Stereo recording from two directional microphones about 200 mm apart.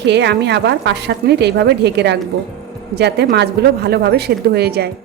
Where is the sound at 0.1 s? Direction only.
60° right (ahead or behind).